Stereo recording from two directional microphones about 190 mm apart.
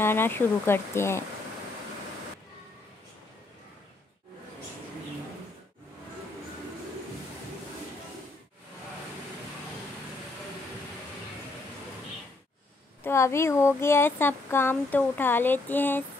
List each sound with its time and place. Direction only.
0.0 s speech: 10° left (ahead or behind)
13.0 s speech: 15° left (ahead or behind)